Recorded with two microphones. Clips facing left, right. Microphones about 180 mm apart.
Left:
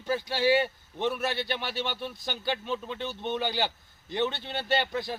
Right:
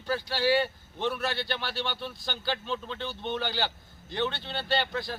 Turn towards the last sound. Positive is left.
turn(degrees=20)  # may be behind; listen again after turning